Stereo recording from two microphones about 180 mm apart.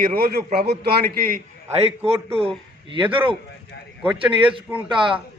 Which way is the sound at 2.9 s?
30° right (ahead or behind).